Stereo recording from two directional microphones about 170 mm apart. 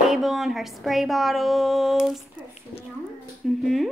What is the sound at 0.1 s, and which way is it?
A woman's voice, centre (ahead or behind).